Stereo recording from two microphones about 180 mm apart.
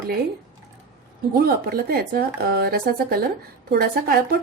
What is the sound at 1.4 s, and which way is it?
Speech, 60° right (ahead or behind).